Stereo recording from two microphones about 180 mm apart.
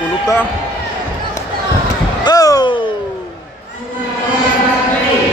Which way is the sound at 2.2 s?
20° left (ahead or behind).